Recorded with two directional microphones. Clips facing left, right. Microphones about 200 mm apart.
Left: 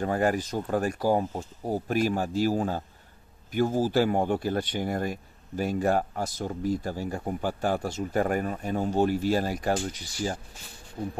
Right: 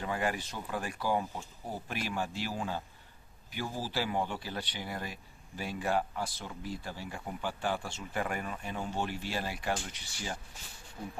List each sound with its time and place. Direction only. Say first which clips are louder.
0.0 s speech: left 8 dB; 45° left (ahead or behind)